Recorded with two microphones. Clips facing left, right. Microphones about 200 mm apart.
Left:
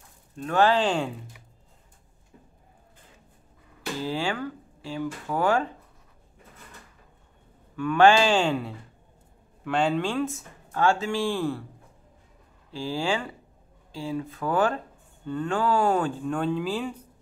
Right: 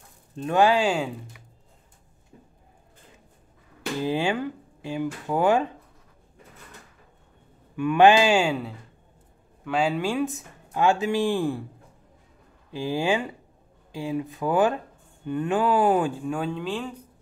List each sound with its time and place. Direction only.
0.4 s speech: 15° right (ahead or behind)
4.0 s speech: 20° right (ahead or behind)
7.7 s speech: 15° right (ahead or behind)
12.7 s speech: 15° right (ahead or behind); by 16.9 s 5° left (ahead or behind)